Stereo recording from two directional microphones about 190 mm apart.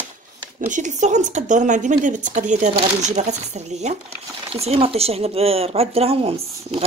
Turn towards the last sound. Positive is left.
turn(degrees=-30)  # may be behind; listen again after turning